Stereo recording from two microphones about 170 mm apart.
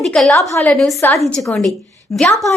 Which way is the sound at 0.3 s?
15° left (ahead or behind).